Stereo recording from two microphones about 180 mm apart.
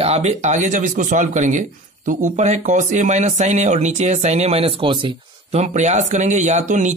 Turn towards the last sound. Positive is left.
turn(degrees=-40)  # may be behind; listen again after turning